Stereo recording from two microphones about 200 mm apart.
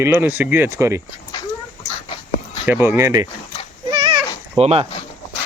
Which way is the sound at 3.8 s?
20° right (ahead or behind).